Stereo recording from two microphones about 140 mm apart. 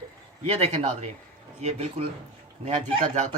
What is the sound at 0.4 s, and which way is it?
Speech, 50° right (ahead or behind).